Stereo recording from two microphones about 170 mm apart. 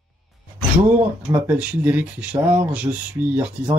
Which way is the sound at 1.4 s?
10° right (ahead or behind).